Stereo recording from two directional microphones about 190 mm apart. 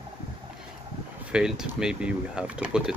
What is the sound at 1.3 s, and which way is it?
Speech, 5° right (ahead or behind).